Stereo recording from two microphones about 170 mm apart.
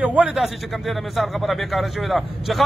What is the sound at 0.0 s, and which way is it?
A man's voice, 5° right (ahead or behind).